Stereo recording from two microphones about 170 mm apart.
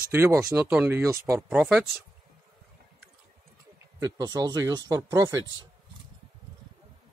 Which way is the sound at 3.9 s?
20° right (ahead or behind).